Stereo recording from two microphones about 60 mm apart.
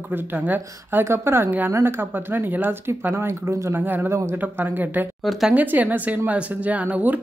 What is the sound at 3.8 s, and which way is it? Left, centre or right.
Speech, right.